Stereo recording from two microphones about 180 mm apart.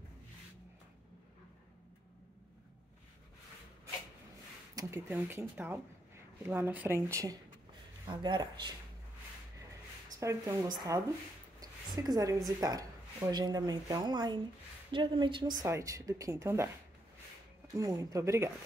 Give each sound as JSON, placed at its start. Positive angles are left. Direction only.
{"t": 4.7, "sound": "speech", "side_deg": -15}
{"t": 10.2, "sound": "a woman's voice", "side_deg": -20}
{"t": 17.7, "sound": "speech", "side_deg": -20}